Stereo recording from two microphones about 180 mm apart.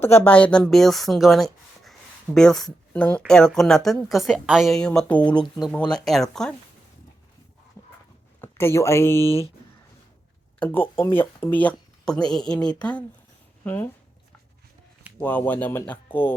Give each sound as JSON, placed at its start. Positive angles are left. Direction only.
{"t": 0.0, "sound": "speech", "side_deg": 10}
{"t": 8.4, "sound": "speech", "side_deg": 15}
{"t": 10.6, "sound": "speech", "side_deg": 10}
{"t": 15.2, "sound": "speech", "side_deg": 10}